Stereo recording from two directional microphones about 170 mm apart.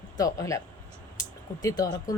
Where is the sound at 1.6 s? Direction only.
20° left (ahead or behind).